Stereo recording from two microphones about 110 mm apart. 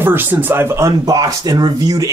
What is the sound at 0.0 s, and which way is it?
Speech, 20° right (ahead or behind).